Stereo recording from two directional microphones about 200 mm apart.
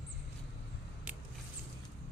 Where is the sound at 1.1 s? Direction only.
10° right (ahead or behind).